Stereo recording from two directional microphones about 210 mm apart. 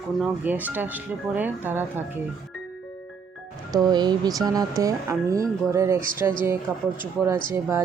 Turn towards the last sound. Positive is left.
turn(degrees=-15)  # may be behind; listen again after turning